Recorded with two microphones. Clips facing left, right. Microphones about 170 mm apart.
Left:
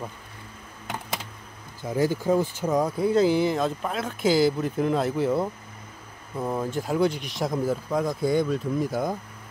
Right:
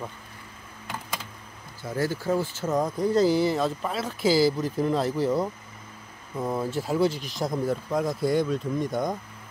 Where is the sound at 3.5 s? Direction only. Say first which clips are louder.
Even; centre (ahead or behind).